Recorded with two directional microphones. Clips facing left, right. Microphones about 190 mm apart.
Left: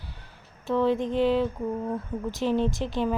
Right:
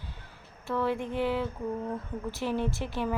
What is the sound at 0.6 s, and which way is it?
A woman's voice, 20° left (ahead or behind).